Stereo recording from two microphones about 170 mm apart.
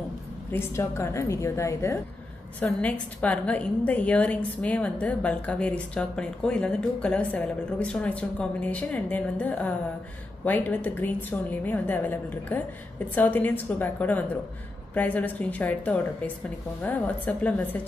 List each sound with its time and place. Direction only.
0.5 s a woman's voice: 15° left (ahead or behind)